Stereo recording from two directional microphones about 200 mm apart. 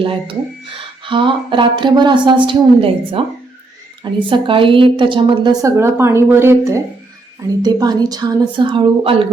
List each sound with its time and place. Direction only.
0.0 s a woman's voice: 25° right (ahead or behind)